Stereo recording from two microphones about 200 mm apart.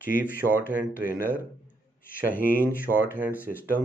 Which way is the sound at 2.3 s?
45° left (ahead or behind).